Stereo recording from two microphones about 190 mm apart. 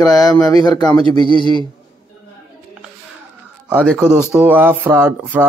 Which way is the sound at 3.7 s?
5° right (ahead or behind).